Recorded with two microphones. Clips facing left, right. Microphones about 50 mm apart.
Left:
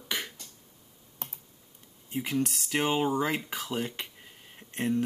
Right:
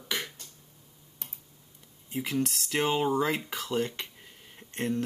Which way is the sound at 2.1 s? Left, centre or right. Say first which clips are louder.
Even; centre.